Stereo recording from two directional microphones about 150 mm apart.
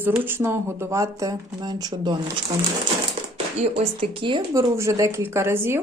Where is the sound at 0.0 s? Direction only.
15° right (ahead or behind); by 2.4 s 30° right (ahead or behind).